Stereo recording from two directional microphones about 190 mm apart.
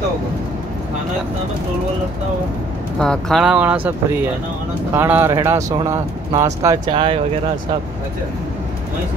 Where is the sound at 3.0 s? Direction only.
5° left (ahead or behind); by 7.1 s 25° right (ahead or behind).